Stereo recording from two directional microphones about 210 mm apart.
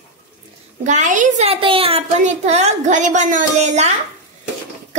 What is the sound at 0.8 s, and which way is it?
A woman's voice, 35° right (ahead or behind).